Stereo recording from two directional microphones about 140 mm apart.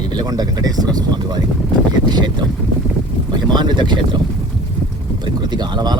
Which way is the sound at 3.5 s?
30° right (ahead or behind).